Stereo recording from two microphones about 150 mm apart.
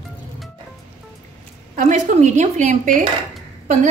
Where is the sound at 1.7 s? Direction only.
55° right (ahead or behind).